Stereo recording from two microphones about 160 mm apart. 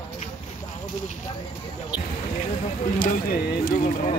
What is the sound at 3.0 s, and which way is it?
Speech, 60° left (ahead or behind).